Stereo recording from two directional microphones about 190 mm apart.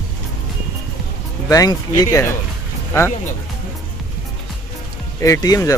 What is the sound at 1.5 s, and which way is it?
Speech, 20° left (ahead or behind).